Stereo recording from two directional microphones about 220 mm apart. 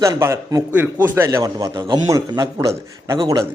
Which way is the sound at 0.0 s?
15° right (ahead or behind).